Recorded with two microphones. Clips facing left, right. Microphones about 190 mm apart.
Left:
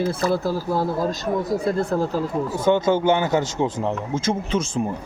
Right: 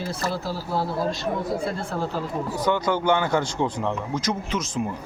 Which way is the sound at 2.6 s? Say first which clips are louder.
Left 5 dB; 25° left (ahead or behind).